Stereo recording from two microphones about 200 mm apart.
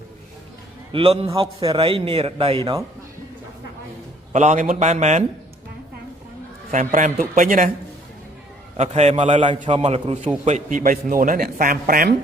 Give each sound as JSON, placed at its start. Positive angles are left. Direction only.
{"t": 0.9, "sound": "a man's voice", "side_deg": -30}
{"t": 4.3, "sound": "a man's voice", "side_deg": -35}
{"t": 6.7, "sound": "a man's voice", "side_deg": -40}
{"t": 8.8, "sound": "a man's voice", "side_deg": -35}